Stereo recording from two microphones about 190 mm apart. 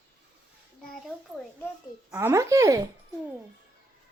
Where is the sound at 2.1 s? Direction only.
15° right (ahead or behind).